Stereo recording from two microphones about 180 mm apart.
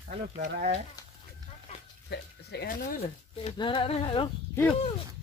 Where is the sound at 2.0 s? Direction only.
65° left (ahead or behind).